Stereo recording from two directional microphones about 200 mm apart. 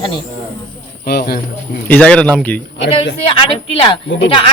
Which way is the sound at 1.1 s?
50° left (ahead or behind).